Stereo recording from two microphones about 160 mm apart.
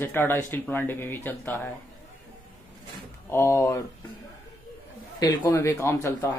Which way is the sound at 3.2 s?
15° left (ahead or behind).